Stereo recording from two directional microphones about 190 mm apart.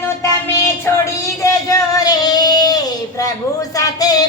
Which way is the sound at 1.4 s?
20° left (ahead or behind).